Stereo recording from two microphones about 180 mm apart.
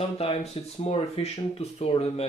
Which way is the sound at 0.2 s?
35° left (ahead or behind).